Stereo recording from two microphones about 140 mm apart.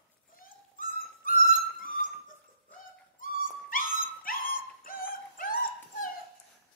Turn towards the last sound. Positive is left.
turn(degrees=80)